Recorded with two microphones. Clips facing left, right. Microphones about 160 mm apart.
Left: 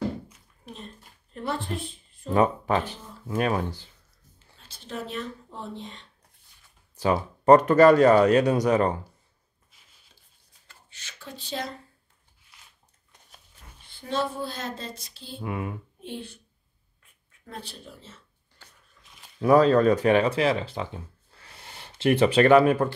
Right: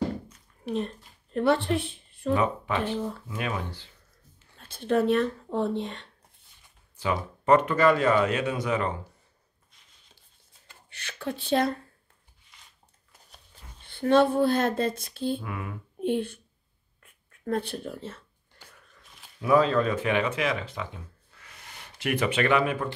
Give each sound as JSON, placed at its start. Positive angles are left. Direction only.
{"t": 0.7, "sound": "speech", "side_deg": -70}
{"t": 2.3, "sound": "speech", "side_deg": 40}
{"t": 4.6, "sound": "speech", "side_deg": -55}
{"t": 7.0, "sound": "speech", "side_deg": 40}
{"t": 10.9, "sound": "speech", "side_deg": -60}
{"t": 13.8, "sound": "speech", "side_deg": -60}
{"t": 15.4, "sound": "speech", "side_deg": 25}
{"t": 16.0, "sound": "speech", "side_deg": -55}
{"t": 19.0, "sound": "a sound", "side_deg": 0}
{"t": 19.4, "sound": "speech", "side_deg": 40}